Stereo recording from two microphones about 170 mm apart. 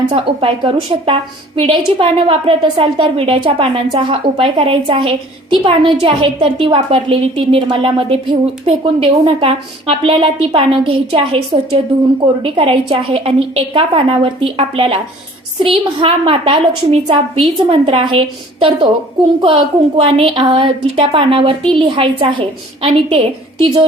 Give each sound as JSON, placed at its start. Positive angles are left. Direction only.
{"t": 0.0, "sound": "a woman's voice", "side_deg": -30}
{"t": 19.4, "sound": "a woman's voice", "side_deg": -30}